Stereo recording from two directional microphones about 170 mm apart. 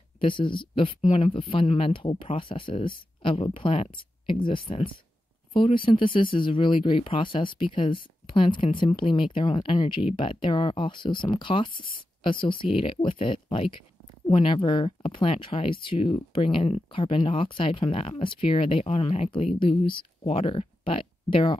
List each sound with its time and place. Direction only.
0.2 s speech: 30° left (ahead or behind)